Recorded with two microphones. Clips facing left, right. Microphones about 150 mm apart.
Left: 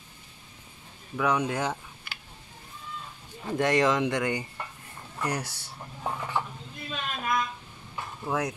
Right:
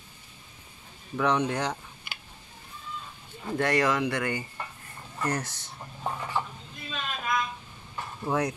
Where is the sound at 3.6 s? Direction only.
20° left (ahead or behind).